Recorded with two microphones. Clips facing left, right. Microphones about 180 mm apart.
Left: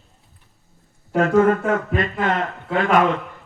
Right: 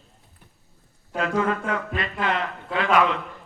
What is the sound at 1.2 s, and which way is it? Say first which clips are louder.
A man's voice: left 8 dB; 45° left (ahead or behind).